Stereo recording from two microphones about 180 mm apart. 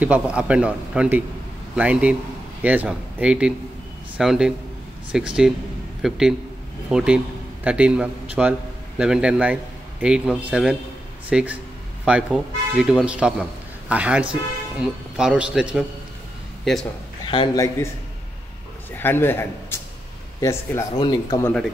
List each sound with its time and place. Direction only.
0.0 s a man's voice: 5° right (ahead or behind)
18.9 s a man's voice: 10° left (ahead or behind)
21.4 s speech: 10° left (ahead or behind)